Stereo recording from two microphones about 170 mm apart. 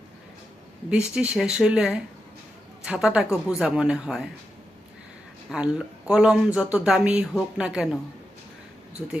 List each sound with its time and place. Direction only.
0.9 s speech: 5° right (ahead or behind)
5.5 s speech: 5° right (ahead or behind)